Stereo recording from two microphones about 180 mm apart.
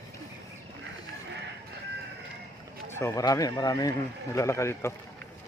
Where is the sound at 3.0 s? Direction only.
20° left (ahead or behind).